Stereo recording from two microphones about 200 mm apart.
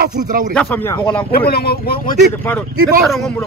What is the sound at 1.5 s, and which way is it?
Speech, 50° left (ahead or behind).